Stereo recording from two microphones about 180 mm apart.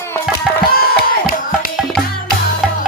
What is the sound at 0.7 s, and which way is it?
Music, 55° left (ahead or behind).